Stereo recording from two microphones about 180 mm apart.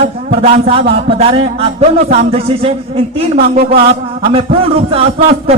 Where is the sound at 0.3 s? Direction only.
35° right (ahead or behind).